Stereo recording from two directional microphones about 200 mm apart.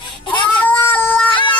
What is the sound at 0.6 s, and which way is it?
Cat, 10° left (ahead or behind).